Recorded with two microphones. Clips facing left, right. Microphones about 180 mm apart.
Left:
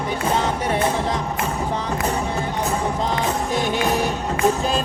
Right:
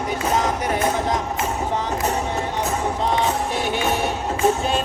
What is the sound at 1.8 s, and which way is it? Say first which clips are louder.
Music: even; 35° right (ahead or behind).